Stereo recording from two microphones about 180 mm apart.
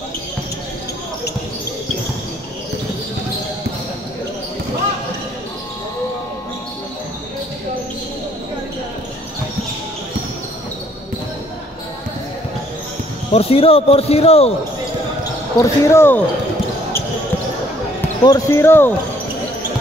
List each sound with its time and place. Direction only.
13.3 s speech: 35° left (ahead or behind)
15.6 s speech: 15° left (ahead or behind)
18.2 s speech: 15° left (ahead or behind)